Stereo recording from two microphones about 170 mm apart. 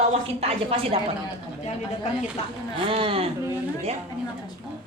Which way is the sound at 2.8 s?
30° right (ahead or behind).